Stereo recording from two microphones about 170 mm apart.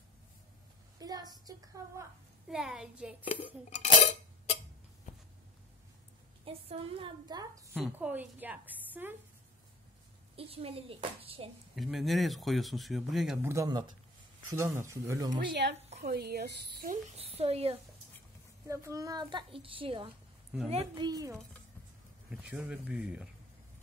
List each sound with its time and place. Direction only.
0.9 s a sound: 20° right (ahead or behind)
2.4 s speech: 5° right (ahead or behind)
3.8 s cutlery: 50° left (ahead or behind)
5.1 s a sound: 45° left (ahead or behind)
6.4 s a woman's voice: 30° right (ahead or behind)
7.7 s a woman's voice: 5° right (ahead or behind)
10.3 s speech: 35° right (ahead or behind)
11.7 s speech: centre (ahead or behind)
13.4 s a woman's voice: 15° right (ahead or behind)
15.3 s speech: 90° right
16.0 s speech: 70° right (ahead or behind)
16.9 s speech: 35° right (ahead or behind)
18.7 s a woman's voice: 20° right (ahead or behind)
22.3 s a woman's voice: 5° right (ahead or behind)